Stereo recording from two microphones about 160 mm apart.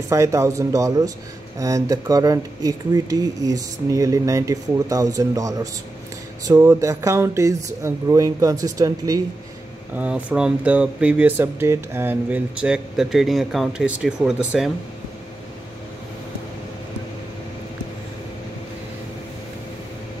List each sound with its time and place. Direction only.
0.1 s speech: 20° right (ahead or behind)
9.9 s speech: 10° right (ahead or behind)